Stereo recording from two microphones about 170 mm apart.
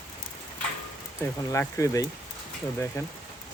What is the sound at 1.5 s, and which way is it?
Speech, 20° left (ahead or behind).